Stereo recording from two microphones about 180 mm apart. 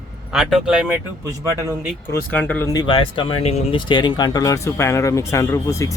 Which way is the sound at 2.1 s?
10° left (ahead or behind).